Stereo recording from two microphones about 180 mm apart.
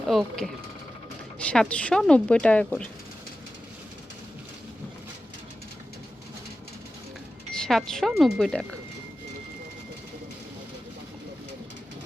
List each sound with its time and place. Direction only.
0.1 s a woman's voice: centre (ahead or behind)
7.5 s a woman's voice: 5° left (ahead or behind)